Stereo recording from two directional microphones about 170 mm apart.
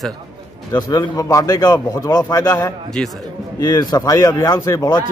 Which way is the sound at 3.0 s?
5° left (ahead or behind).